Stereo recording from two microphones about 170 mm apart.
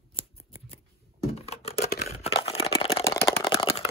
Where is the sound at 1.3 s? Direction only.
35° left (ahead or behind).